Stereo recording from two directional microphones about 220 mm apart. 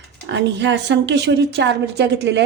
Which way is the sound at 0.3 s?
55° right (ahead or behind).